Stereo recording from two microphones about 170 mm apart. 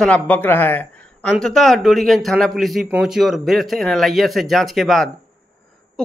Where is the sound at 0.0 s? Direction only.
10° left (ahead or behind).